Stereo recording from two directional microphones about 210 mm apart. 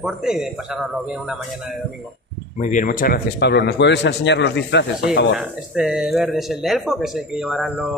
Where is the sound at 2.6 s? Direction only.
40° left (ahead or behind); by 5.3 s 55° left (ahead or behind).